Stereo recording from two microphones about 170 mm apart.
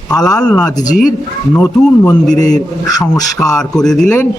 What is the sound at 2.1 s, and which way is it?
A man's voice, 5° left (ahead or behind).